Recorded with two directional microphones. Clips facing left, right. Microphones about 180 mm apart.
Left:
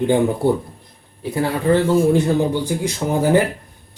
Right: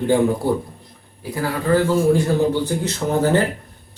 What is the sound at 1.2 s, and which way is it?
Speech, 25° left (ahead or behind).